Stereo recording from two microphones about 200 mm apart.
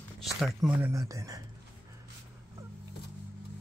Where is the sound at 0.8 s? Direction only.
15° right (ahead or behind).